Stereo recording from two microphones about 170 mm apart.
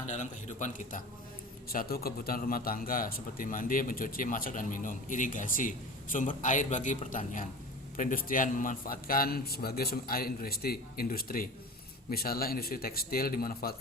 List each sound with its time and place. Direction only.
0.1 s a man's voice: 45° left (ahead or behind); by 13.7 s 60° left (ahead or behind)